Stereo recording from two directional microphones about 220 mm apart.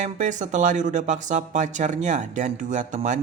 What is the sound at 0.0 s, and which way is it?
Speech, 35° right (ahead or behind).